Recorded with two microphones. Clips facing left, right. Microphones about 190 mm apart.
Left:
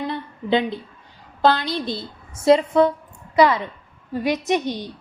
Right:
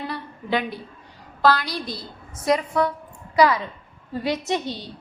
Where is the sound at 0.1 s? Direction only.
20° left (ahead or behind).